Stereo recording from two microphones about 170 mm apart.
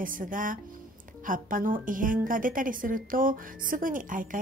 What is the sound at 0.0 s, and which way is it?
A woman's voice, 55° right (ahead or behind).